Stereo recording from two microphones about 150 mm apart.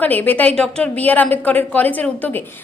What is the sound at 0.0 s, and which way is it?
A woman's voice, 10° left (ahead or behind).